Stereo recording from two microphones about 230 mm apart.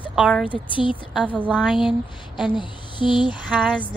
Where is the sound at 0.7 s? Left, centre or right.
Left.